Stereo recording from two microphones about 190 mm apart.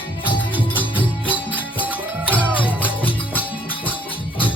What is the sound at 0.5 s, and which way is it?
Music, 10° left (ahead or behind).